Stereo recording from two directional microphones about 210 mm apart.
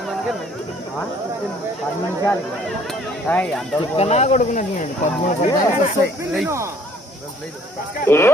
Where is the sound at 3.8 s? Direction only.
30° left (ahead or behind).